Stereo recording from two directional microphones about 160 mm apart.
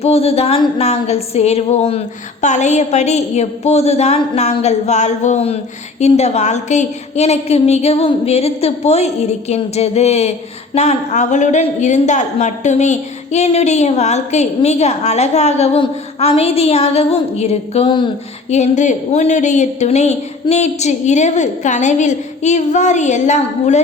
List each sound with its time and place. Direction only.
0.0 s a woman's voice: 40° left (ahead or behind)
18.5 s a woman's voice: 45° left (ahead or behind)